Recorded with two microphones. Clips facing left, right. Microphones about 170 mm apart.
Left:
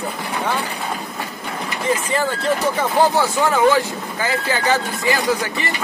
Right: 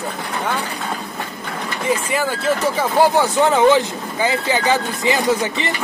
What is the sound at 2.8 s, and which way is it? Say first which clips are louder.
Speech: right 2 dB; 10° right (ahead or behind).